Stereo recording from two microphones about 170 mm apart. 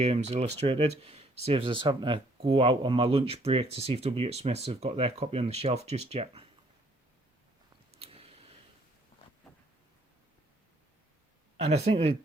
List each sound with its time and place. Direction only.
0.0 s speech: 40° right (ahead or behind)
8.0 s a sound: 35° right (ahead or behind)
11.5 s speech: 35° right (ahead or behind)